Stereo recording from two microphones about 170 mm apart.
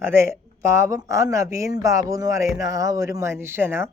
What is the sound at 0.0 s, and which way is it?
A woman's voice, 15° right (ahead or behind).